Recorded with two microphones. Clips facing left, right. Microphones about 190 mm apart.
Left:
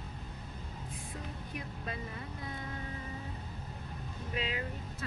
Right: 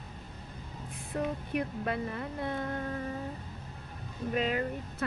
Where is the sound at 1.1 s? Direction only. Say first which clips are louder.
Right 14 dB; 65° right (ahead or behind).